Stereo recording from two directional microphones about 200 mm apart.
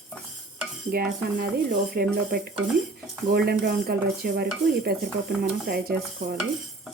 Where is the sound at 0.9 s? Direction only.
45° right (ahead or behind).